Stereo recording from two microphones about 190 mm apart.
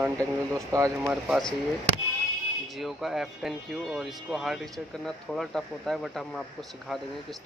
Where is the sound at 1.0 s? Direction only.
5° right (ahead or behind).